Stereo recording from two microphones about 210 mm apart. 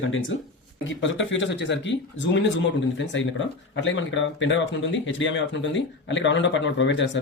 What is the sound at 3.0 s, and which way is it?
Speech, 60° left (ahead or behind).